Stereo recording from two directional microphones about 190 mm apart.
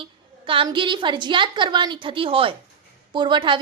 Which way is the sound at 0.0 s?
25° right (ahead or behind).